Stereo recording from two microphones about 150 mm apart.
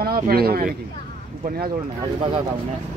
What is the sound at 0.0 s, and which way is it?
Speech, 90° right.